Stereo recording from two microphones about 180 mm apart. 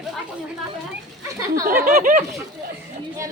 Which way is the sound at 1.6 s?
50° right (ahead or behind).